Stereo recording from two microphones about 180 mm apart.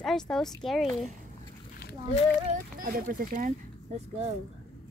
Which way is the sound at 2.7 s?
50° right (ahead or behind).